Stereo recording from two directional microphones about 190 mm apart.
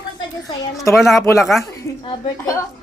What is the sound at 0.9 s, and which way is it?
Speech, centre (ahead or behind).